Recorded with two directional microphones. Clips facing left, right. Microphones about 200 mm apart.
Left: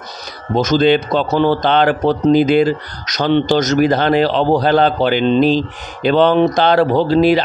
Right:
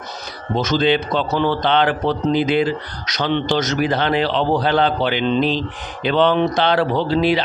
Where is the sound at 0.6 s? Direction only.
45° left (ahead or behind).